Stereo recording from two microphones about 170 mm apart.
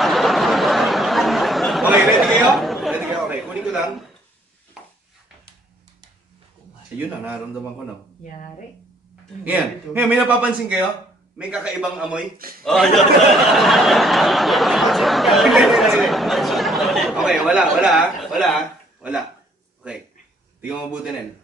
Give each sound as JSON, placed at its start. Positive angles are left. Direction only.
{"t": 0.0, "sound": "a sound", "side_deg": 0}
{"t": 2.0, "sound": "chatter", "side_deg": 0}
{"t": 9.4, "sound": "a man's voice", "side_deg": -10}
{"t": 12.4, "sound": "a man's voice", "side_deg": -60}
{"t": 12.6, "sound": "speech", "side_deg": 0}
{"t": 20.6, "sound": "a man's voice", "side_deg": -5}